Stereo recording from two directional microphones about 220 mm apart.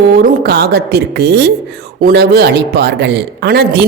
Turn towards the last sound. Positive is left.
turn(degrees=-50)  # may be behind; listen again after turning